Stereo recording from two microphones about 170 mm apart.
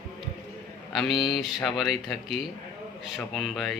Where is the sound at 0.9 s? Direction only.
Centre (ahead or behind).